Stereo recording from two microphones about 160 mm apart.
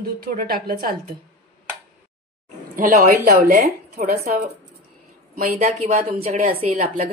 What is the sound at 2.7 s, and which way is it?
Speech, 60° right (ahead or behind).